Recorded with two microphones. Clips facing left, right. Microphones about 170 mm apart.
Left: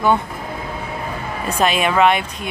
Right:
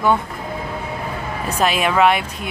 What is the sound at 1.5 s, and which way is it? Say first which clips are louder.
Speech: left 1 dB; 5° right (ahead or behind).